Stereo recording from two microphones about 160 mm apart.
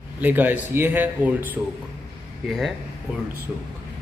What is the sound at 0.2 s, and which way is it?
A man's voice, 10° right (ahead or behind).